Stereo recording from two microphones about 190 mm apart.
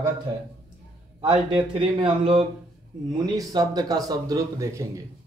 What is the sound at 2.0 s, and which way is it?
Speech, 30° right (ahead or behind).